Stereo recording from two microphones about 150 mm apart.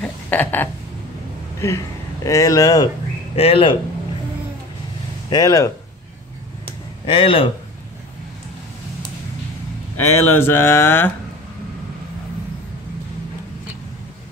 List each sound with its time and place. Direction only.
0.0 s speech: 10° left (ahead or behind)
2.2 s speech: 20° left (ahead or behind)
3.3 s speech: 40° left (ahead or behind)
5.3 s speech: 25° left (ahead or behind)
7.1 s speech: 35° left (ahead or behind)
9.9 s speech: 15° left (ahead or behind)